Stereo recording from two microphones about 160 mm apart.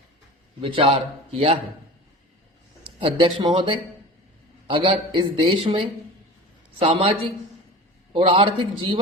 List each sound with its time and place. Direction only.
0.6 s a man's voice: 35° right (ahead or behind)
3.0 s a man's voice: 30° right (ahead or behind)